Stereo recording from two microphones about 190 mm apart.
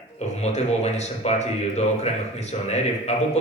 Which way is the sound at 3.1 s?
35° left (ahead or behind).